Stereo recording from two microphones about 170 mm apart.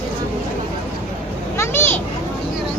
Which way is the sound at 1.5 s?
15° left (ahead or behind).